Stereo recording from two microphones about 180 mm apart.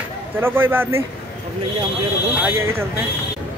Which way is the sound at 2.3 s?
10° right (ahead or behind).